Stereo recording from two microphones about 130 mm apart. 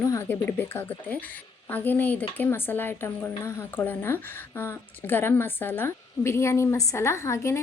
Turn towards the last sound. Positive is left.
turn(degrees=20)  # may be behind; listen again after turning